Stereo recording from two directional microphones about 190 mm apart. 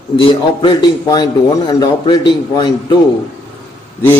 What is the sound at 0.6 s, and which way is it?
A man's voice, 25° left (ahead or behind).